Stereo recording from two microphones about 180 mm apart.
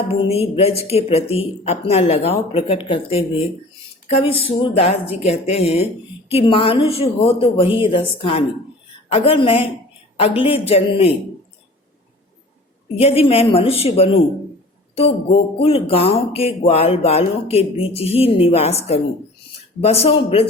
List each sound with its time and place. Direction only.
0.1 s speech: 30° left (ahead or behind)
13.0 s speech: 35° left (ahead or behind)